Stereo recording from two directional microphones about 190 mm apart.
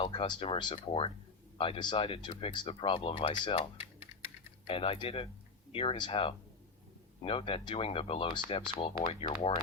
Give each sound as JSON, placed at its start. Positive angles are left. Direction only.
{"t": 0.0, "sound": "speech", "side_deg": 25}